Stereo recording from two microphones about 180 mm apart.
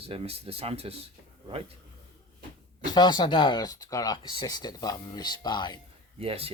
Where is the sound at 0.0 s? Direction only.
35° right (ahead or behind).